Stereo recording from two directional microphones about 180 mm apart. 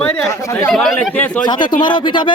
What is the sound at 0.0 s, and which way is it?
Speech, 10° left (ahead or behind).